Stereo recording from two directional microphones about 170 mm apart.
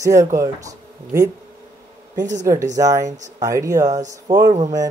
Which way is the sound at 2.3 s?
20° right (ahead or behind).